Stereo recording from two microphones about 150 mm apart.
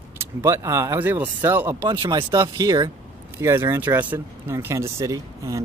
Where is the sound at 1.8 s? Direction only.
30° right (ahead or behind).